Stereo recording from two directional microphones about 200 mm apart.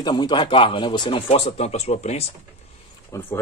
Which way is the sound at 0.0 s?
20° left (ahead or behind).